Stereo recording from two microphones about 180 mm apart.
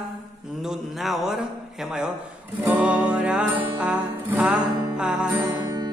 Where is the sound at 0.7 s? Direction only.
Centre (ahead or behind).